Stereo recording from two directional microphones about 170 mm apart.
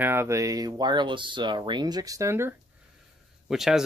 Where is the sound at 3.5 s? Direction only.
Centre (ahead or behind).